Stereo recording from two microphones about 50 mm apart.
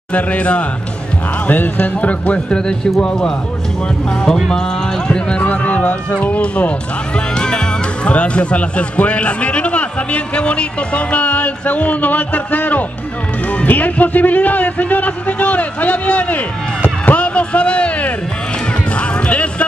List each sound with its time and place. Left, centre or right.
0.1 s speech: left
1.5 s speech: left
2.5 s speech: centre
5.5 s music: left
6.2 s a man's voice: left
18.9 s music: left